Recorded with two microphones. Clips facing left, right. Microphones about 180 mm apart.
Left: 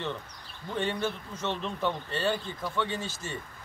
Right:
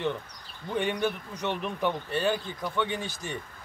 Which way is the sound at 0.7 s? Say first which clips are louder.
Right 3 dB; 15° right (ahead or behind).